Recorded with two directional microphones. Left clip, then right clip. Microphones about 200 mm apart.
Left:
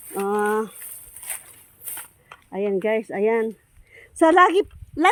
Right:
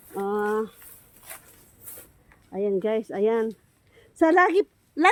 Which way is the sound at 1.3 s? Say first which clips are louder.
Left 7 dB; 55° left (ahead or behind).